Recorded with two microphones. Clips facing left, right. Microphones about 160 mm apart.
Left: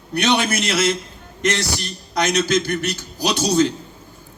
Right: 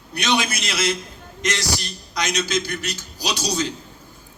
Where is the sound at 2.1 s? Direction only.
55° left (ahead or behind).